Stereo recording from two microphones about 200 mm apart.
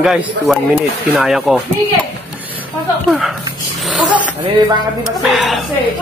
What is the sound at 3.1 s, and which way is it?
Speech, centre (ahead or behind).